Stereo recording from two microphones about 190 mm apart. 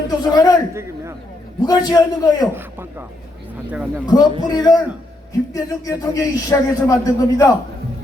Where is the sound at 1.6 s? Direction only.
20° left (ahead or behind).